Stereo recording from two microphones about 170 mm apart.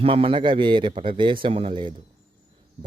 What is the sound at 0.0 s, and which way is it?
Speech, 35° right (ahead or behind).